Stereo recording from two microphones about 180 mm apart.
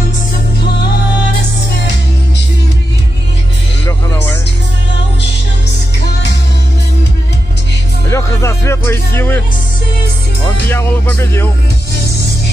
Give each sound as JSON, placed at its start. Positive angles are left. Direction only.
{"t": 3.8, "sound": "music", "side_deg": 20}
{"t": 8.1, "sound": "music", "side_deg": 15}
{"t": 10.7, "sound": "music", "side_deg": 10}